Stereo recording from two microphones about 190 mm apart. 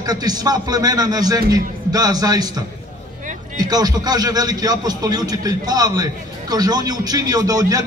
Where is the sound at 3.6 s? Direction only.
20° right (ahead or behind).